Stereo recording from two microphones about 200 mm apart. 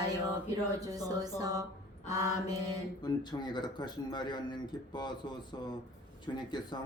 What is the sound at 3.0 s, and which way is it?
Speech, 20° left (ahead or behind).